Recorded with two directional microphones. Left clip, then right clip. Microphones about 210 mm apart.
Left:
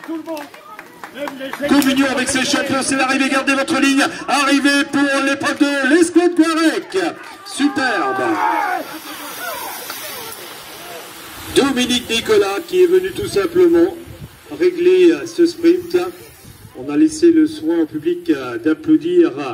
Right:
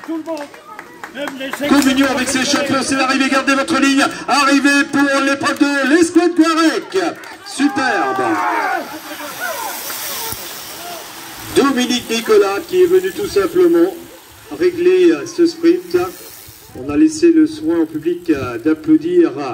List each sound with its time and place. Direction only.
1.7 s a man's voice: 15° left (ahead or behind)
11.5 s a man's voice: 25° left (ahead or behind)